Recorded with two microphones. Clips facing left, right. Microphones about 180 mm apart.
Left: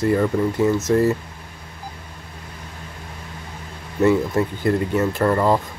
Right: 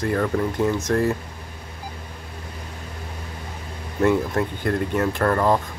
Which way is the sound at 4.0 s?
5° left (ahead or behind).